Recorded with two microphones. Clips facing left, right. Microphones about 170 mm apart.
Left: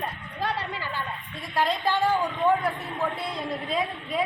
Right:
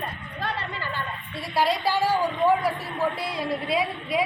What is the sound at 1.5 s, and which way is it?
A woman's voice, 10° right (ahead or behind).